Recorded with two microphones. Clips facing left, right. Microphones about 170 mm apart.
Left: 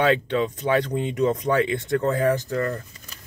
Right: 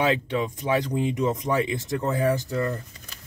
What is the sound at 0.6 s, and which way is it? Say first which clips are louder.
Speech: left 2 dB; 25° left (ahead or behind).